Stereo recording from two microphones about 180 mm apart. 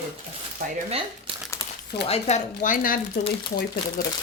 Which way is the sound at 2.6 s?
50° left (ahead or behind).